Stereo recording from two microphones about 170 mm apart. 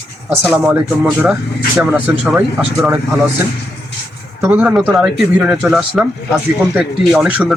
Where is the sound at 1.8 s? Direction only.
10° right (ahead or behind).